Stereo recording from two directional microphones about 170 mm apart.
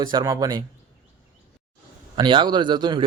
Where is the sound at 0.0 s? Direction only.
25° right (ahead or behind).